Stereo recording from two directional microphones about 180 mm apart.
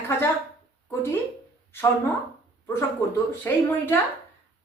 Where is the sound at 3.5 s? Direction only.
15° left (ahead or behind).